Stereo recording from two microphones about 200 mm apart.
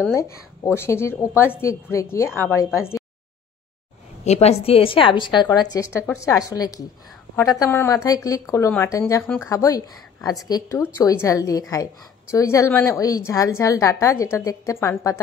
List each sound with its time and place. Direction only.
0.1 s speech: 15° left (ahead or behind)
4.2 s a woman's voice: 35° left (ahead or behind); by 15.1 s 15° left (ahead or behind)